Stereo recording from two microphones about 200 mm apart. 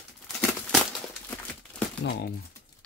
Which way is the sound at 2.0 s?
60° left (ahead or behind).